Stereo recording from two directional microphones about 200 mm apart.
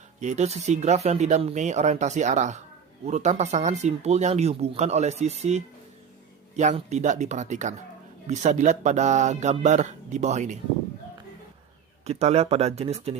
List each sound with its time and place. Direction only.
0.2 s speech: 35° right (ahead or behind)
12.0 s speech: 30° right (ahead or behind)